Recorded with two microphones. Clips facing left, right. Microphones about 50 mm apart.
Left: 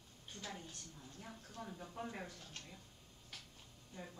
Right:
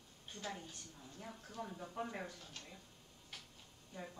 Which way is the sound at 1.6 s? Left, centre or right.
Centre.